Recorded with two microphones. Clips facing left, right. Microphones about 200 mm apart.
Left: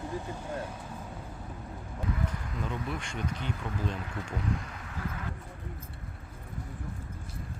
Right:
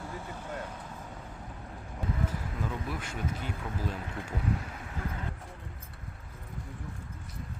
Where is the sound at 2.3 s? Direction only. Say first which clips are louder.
Even; 5° right (ahead or behind).